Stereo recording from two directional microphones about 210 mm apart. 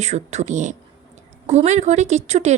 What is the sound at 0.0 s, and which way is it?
Speech, 30° right (ahead or behind).